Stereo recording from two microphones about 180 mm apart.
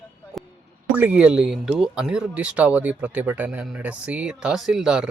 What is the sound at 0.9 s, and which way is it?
Speech, 5° right (ahead or behind).